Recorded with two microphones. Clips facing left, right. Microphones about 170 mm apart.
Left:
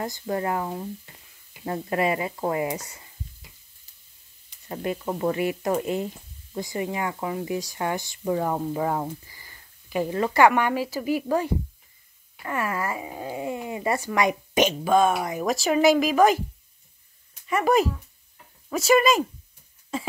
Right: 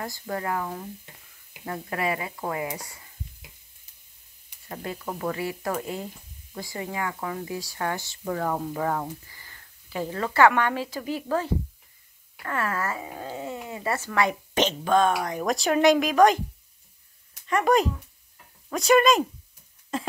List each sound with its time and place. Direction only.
0.0 s speech: 25° left (ahead or behind)
4.6 s speech: 20° left (ahead or behind); by 16.3 s 5° left (ahead or behind)
17.5 s speech: 5° left (ahead or behind)